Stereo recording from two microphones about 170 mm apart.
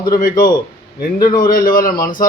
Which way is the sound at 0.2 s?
55° left (ahead or behind).